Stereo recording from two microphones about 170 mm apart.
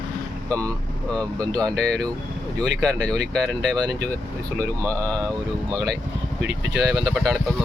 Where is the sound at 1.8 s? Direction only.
5° left (ahead or behind).